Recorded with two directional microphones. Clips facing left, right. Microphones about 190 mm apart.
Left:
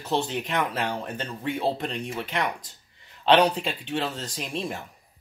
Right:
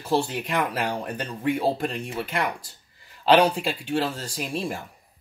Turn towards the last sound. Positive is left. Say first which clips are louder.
# right 2 dB
turn(degrees=-5)  # may be behind; listen again after turning